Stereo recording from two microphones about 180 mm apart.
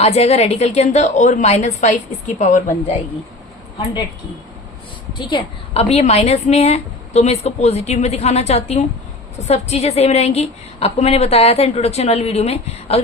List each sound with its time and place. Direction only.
0.0 s a woman's voice: 35° left (ahead or behind)
5.1 s a woman's voice: 25° left (ahead or behind)